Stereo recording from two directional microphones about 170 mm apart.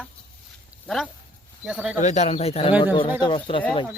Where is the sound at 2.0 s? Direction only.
40° left (ahead or behind).